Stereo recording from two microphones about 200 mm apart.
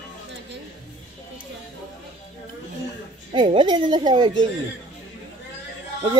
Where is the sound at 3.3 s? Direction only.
25° right (ahead or behind).